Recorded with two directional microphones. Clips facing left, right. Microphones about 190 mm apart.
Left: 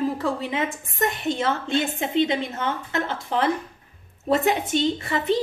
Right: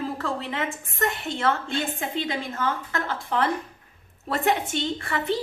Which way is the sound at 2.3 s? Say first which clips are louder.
Left 2 dB; 25° left (ahead or behind).